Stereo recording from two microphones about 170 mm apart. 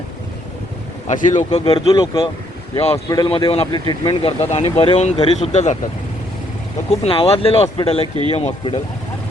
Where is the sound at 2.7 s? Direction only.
35° left (ahead or behind).